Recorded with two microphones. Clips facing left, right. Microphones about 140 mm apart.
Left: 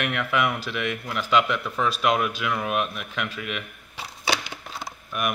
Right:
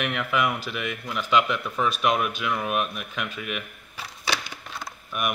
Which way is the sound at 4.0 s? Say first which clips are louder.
Left 3 dB; 25° left (ahead or behind).